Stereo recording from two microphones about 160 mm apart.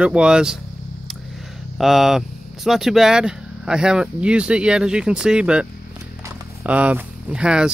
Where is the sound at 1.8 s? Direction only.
Centre (ahead or behind).